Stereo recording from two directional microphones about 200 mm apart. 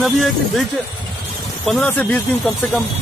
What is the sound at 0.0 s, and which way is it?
Speech, centre (ahead or behind).